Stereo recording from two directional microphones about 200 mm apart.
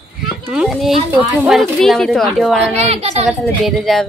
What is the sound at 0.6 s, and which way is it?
Speech, centre (ahead or behind).